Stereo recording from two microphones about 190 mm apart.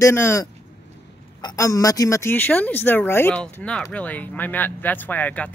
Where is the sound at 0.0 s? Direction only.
15° left (ahead or behind).